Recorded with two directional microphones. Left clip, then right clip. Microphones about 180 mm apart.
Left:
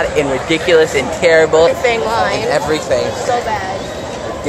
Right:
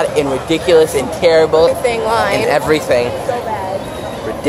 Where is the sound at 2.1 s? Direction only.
20° right (ahead or behind).